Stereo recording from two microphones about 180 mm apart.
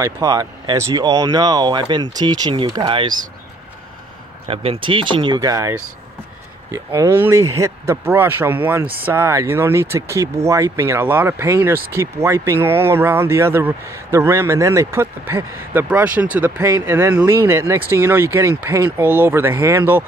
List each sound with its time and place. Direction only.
0.0 s speech: 15° right (ahead or behind)
4.5 s speech: 30° right (ahead or behind); by 20.1 s 10° right (ahead or behind)